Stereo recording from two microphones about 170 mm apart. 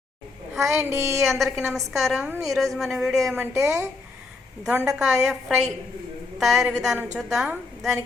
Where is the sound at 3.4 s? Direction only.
15° right (ahead or behind).